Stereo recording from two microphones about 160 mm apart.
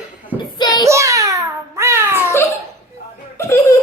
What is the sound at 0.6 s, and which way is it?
Child singing, 25° left (ahead or behind).